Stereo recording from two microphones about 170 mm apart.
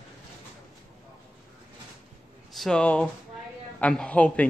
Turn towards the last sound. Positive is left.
turn(degrees=10)  # may be behind; listen again after turning